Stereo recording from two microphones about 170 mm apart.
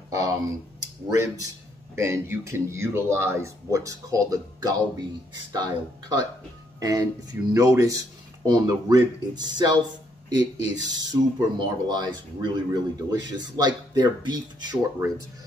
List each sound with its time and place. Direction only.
1.1 s speech: 20° right (ahead or behind)